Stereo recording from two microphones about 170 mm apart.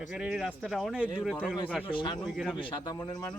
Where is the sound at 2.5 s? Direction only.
25° left (ahead or behind).